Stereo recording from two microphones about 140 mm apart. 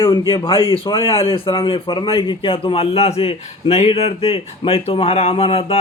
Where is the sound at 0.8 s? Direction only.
40° left (ahead or behind).